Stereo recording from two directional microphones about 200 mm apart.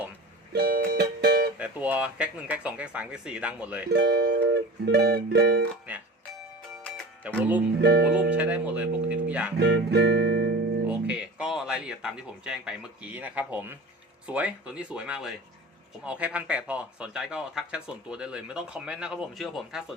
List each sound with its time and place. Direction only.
0.5 s music: 50° right (ahead or behind)
1.5 s speech: 5° right (ahead or behind)
3.8 s speech: 55° right (ahead or behind)
7.3 s speech: 10° right (ahead or behind)
7.8 s speech: 55° right (ahead or behind)
8.4 s speech: 5° right (ahead or behind)
9.6 s music: 55° right (ahead or behind)
10.8 s speech: 5° right (ahead or behind)